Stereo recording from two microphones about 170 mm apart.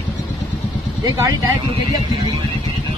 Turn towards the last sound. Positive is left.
turn(degrees=-15)  # may be behind; listen again after turning